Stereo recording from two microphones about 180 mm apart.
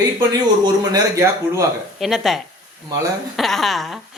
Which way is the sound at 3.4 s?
Centre (ahead or behind).